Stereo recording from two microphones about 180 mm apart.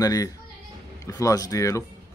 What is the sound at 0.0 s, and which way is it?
Speech, 20° left (ahead or behind).